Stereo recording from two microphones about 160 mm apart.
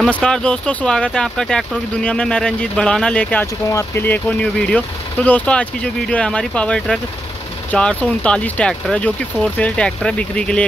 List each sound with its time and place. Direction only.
0.0 s speech: 5° left (ahead or behind)